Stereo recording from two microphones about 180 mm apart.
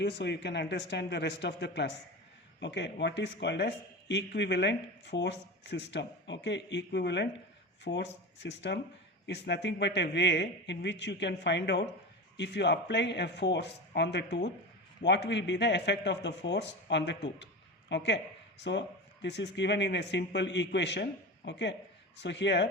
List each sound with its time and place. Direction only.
0.0 s speech: 75° left (ahead or behind)